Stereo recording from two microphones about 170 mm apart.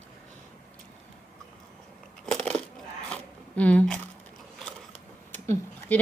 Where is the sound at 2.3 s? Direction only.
5° left (ahead or behind).